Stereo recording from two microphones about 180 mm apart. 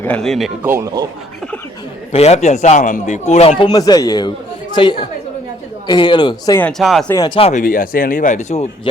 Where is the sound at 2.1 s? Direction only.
35° left (ahead or behind).